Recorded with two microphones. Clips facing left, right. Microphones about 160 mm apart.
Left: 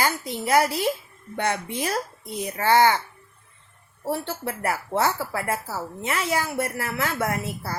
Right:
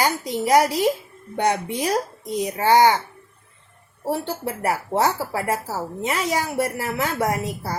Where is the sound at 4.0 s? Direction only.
15° right (ahead or behind).